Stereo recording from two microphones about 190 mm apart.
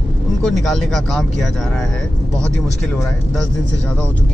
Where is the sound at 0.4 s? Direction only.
Centre (ahead or behind).